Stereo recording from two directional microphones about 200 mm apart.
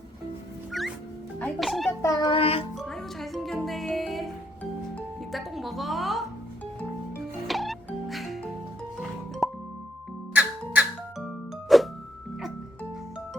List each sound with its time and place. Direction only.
0.8 s music: centre (ahead or behind)
1.4 s speech: 5° left (ahead or behind)
2.0 s child singing: 20° left (ahead or behind)
2.7 s music: centre (ahead or behind)
7.4 s music: centre (ahead or behind)